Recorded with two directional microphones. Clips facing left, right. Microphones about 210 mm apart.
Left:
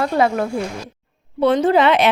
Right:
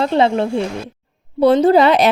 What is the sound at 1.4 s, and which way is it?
Speech, 35° right (ahead or behind).